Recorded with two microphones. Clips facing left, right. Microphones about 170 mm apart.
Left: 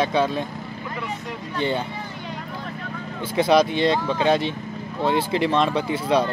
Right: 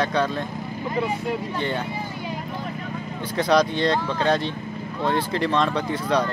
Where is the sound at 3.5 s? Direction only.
25° left (ahead or behind).